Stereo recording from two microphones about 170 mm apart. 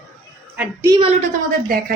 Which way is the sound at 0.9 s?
30° right (ahead or behind).